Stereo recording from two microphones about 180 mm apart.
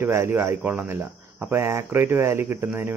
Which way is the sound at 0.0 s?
15° right (ahead or behind).